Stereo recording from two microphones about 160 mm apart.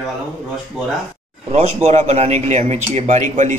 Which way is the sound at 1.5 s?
45° right (ahead or behind).